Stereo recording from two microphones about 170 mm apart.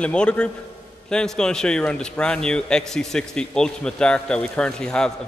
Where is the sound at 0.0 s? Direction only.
5° left (ahead or behind).